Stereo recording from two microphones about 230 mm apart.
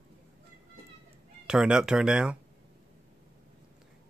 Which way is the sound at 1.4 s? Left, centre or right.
Centre.